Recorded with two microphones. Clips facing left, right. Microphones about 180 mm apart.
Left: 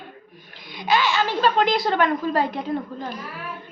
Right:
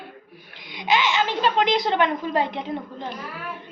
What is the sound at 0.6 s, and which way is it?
A woman's voice, 20° right (ahead or behind).